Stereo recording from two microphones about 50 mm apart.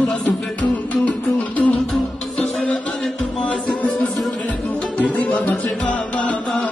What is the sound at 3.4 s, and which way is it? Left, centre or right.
Music, left.